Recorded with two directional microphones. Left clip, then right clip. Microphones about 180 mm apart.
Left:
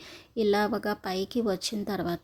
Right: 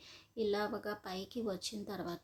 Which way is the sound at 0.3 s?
45° left (ahead or behind).